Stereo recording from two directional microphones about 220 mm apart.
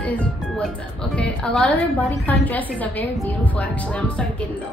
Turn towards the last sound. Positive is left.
turn(degrees=5)  # may be behind; listen again after turning